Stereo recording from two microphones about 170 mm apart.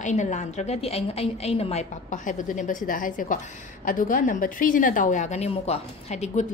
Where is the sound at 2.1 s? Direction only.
50° left (ahead or behind).